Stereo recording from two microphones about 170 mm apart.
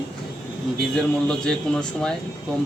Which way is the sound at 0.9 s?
5° left (ahead or behind).